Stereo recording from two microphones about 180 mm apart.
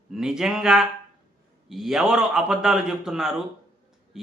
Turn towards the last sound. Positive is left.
turn(degrees=-5)  # may be behind; listen again after turning